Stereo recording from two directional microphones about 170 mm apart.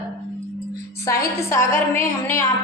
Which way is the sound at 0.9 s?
20° left (ahead or behind).